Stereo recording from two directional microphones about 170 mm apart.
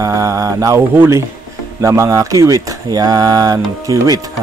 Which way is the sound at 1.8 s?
15° right (ahead or behind).